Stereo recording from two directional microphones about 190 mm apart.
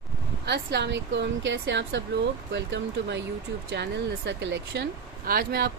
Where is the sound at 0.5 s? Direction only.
60° right (ahead or behind).